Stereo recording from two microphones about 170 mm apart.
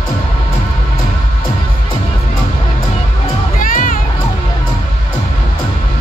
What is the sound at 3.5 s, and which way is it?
Music, 50° left (ahead or behind).